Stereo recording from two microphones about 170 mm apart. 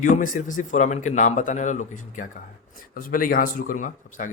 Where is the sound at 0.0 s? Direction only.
50° left (ahead or behind).